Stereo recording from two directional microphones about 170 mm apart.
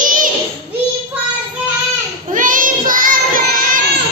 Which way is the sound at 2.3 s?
50° right (ahead or behind).